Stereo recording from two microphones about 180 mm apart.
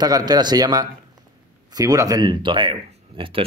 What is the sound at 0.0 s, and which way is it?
A man's voice, 20° right (ahead or behind).